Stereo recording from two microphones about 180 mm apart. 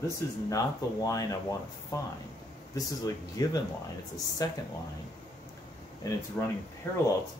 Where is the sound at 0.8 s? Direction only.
20° left (ahead or behind).